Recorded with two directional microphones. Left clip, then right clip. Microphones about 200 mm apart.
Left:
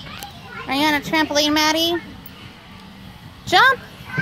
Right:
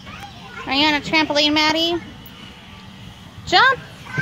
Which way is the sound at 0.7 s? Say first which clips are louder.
Right 1 dB; 25° left (ahead or behind).